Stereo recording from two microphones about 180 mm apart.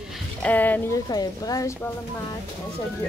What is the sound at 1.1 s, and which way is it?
Speech, 20° left (ahead or behind).